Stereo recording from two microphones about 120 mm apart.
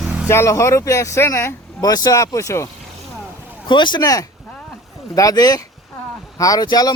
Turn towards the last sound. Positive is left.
turn(degrees=35)  # may be behind; listen again after turning